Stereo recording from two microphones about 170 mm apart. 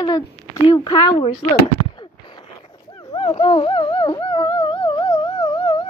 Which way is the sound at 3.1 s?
35° left (ahead or behind).